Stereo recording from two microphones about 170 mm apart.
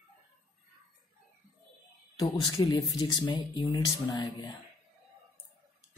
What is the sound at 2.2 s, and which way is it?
Speech, 25° left (ahead or behind).